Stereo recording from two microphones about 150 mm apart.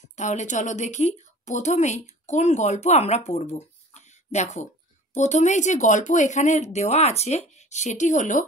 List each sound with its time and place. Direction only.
0.1 s a woman's voice: 55° left (ahead or behind)